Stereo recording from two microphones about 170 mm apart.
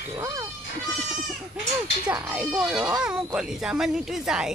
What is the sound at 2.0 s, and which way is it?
Speech, 10° right (ahead or behind).